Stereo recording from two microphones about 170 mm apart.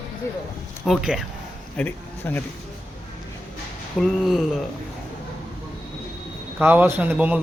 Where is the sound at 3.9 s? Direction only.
Centre (ahead or behind).